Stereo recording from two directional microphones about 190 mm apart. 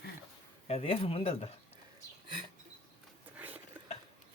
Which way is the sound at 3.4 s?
10° right (ahead or behind).